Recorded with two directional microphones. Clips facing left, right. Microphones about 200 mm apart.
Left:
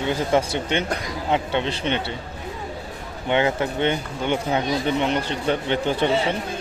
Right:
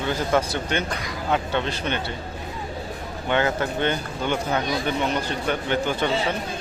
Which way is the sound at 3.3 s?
20° left (ahead or behind).